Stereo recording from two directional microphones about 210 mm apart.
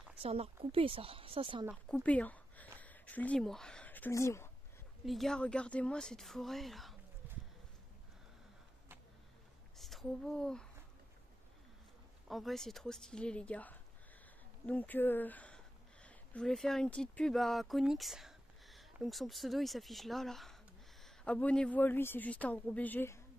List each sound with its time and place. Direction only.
0.2 s speech: 30° right (ahead or behind)
1.9 s speech: 5° left (ahead or behind)
5.0 s speech: centre (ahead or behind)
9.8 s a woman's voice: centre (ahead or behind)
12.3 s a woman's voice: centre (ahead or behind)